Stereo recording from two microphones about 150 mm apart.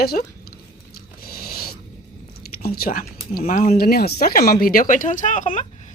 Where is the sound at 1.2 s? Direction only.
90° left.